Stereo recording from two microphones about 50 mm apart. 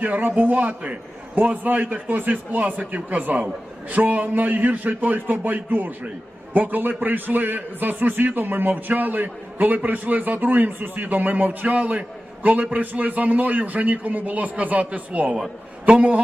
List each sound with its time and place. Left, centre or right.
0.0 s a man's voice: right